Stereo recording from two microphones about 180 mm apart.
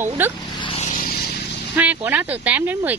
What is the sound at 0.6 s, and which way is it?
Vehicle, 35° left (ahead or behind).